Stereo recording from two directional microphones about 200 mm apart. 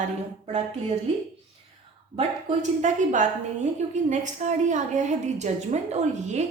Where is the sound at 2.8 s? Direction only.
40° right (ahead or behind).